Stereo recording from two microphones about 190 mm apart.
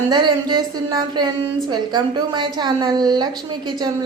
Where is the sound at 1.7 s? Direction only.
20° right (ahead or behind).